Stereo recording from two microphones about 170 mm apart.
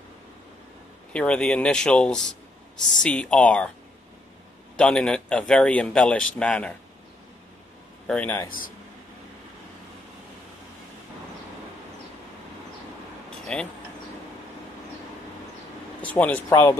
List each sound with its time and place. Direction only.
1.1 s a man's voice: 5° left (ahead or behind)
4.7 s a man's voice: 5° left (ahead or behind)
8.1 s speech: 10° left (ahead or behind)
8.5 s speech: 55° left (ahead or behind)
13.5 s a man's voice: 5° left (ahead or behind)
16.0 s speech: 10° left (ahead or behind)